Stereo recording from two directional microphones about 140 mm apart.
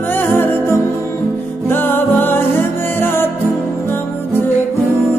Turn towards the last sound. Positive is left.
turn(degrees=15)  # may be behind; listen again after turning